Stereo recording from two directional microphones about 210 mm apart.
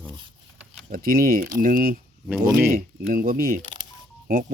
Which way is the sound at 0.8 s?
45° right (ahead or behind).